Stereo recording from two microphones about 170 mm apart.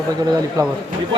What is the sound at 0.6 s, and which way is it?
Speech, 20° right (ahead or behind).